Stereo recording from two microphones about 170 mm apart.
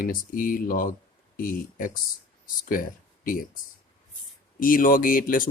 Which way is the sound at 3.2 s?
55° left (ahead or behind).